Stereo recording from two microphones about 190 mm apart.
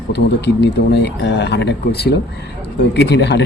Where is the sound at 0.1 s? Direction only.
60° left (ahead or behind).